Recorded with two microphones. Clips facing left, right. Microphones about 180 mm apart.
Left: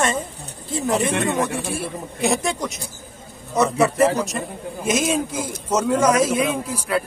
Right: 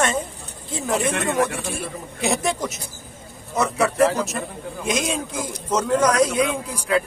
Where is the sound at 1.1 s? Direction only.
20° left (ahead or behind).